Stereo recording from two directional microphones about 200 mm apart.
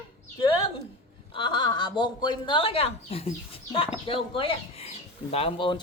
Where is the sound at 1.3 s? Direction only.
25° left (ahead or behind).